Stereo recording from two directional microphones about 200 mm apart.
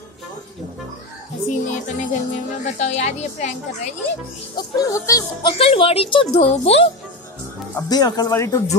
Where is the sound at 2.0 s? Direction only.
35° left (ahead or behind).